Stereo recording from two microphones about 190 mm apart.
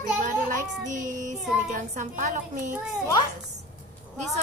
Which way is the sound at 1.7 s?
40° right (ahead or behind).